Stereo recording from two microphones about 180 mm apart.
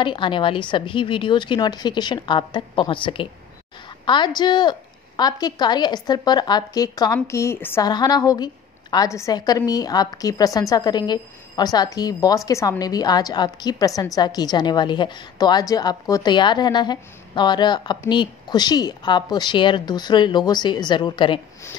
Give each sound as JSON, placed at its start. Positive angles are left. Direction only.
{"t": 0.0, "sound": "a woman's voice", "side_deg": 25}